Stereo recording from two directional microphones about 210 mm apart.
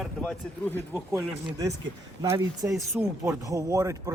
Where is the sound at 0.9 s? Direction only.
10° right (ahead or behind).